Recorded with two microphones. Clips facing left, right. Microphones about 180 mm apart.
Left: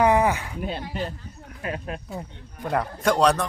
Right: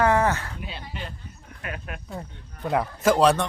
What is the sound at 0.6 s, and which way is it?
Speech, 45° left (ahead or behind).